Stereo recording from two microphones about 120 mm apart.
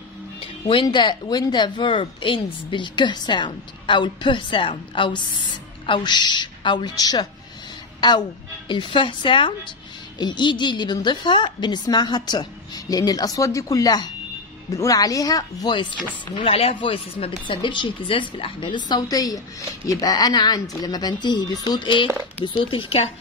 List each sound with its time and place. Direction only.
0.4 s music: 50° left (ahead or behind)
0.8 s a woman's voice: 40° left (ahead or behind)
16.3 s a woman's voice: 55° left (ahead or behind)